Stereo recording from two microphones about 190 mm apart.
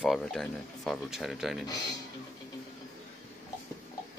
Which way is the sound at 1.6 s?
20° left (ahead or behind).